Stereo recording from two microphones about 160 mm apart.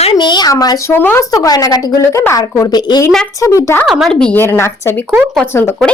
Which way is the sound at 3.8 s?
Centre (ahead or behind).